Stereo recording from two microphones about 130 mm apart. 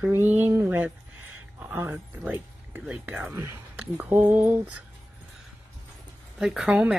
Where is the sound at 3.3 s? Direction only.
20° right (ahead or behind).